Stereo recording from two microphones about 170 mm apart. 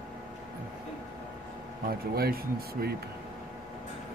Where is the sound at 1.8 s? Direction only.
65° right (ahead or behind).